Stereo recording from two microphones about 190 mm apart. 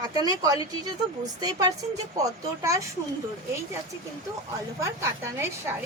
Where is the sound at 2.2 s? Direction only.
15° right (ahead or behind).